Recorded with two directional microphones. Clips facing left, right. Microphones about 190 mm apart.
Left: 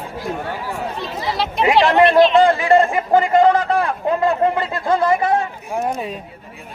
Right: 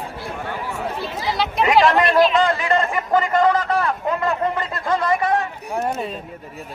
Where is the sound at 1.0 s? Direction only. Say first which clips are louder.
Even; centre (ahead or behind).